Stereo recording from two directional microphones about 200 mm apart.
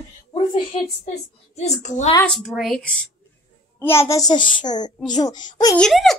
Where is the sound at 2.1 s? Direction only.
5° left (ahead or behind); by 5.7 s 20° left (ahead or behind).